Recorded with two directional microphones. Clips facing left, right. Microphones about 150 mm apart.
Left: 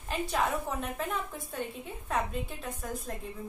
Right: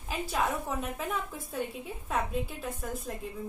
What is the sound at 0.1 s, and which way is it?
A woman's voice, centre (ahead or behind).